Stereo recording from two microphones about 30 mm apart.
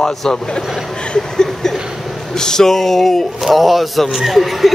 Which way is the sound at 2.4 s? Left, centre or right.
Centre.